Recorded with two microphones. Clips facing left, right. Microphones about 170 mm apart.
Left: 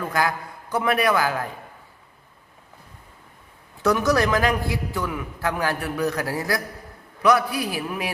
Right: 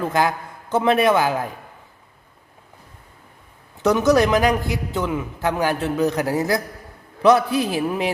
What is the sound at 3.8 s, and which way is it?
A man's voice, 20° right (ahead or behind).